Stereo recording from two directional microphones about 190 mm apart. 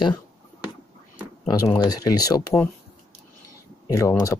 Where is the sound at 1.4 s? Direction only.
20° left (ahead or behind).